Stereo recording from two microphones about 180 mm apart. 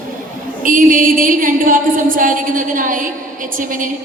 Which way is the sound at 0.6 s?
50° right (ahead or behind).